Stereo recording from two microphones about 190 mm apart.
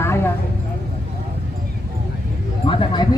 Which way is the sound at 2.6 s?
25° left (ahead or behind).